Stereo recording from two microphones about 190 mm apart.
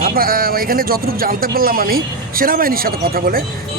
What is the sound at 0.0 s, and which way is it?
Speech, 50° right (ahead or behind).